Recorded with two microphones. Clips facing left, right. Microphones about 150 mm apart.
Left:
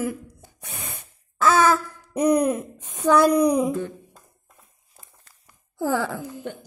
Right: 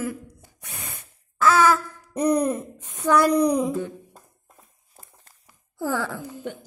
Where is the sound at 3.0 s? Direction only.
25° left (ahead or behind).